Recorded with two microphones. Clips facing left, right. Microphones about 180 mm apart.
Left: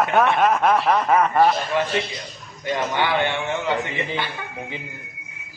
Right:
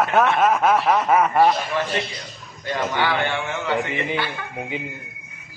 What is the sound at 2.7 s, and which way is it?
A man's voice, 20° left (ahead or behind).